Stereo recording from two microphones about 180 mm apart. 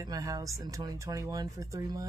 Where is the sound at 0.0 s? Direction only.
20° right (ahead or behind).